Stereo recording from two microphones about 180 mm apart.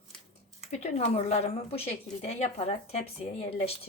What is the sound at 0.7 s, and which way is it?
A woman's voice, 40° left (ahead or behind).